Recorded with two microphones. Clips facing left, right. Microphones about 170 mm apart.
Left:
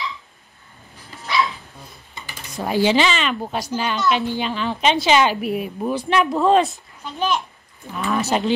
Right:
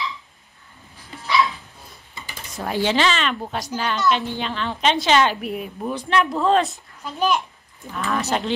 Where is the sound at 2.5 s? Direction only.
5° left (ahead or behind).